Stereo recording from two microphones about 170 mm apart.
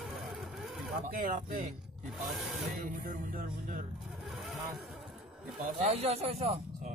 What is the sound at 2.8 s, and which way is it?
Music, 50° right (ahead or behind).